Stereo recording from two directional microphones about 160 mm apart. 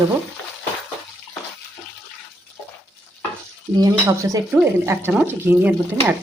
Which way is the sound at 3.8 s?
20° right (ahead or behind).